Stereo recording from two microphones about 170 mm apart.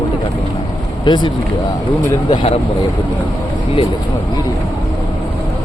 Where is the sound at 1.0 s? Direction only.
25° left (ahead or behind).